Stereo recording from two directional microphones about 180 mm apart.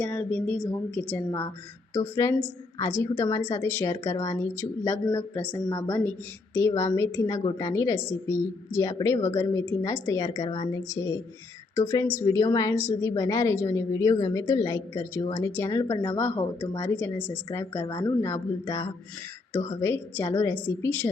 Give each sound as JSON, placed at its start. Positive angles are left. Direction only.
{"t": 0.0, "sound": "a woman's voice", "side_deg": 10}
{"t": 2.2, "sound": "a woman's voice", "side_deg": 15}